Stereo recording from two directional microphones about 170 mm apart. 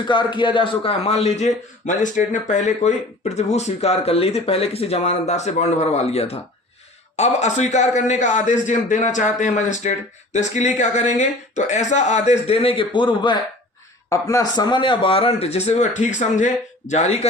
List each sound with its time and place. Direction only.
0.1 s a man's voice: 25° left (ahead or behind); by 17.2 s 40° left (ahead or behind)